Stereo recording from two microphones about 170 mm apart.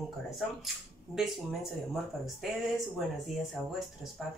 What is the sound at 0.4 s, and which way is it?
Speech, centre (ahead or behind).